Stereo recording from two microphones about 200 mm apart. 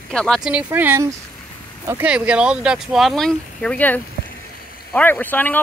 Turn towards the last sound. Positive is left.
turn(degrees=10)  # may be behind; listen again after turning